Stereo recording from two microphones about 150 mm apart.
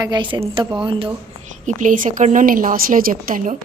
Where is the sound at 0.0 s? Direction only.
30° right (ahead or behind).